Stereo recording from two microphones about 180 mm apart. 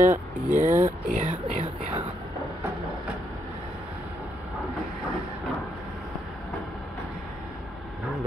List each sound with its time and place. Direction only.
0.0 s speech: 45° right (ahead or behind)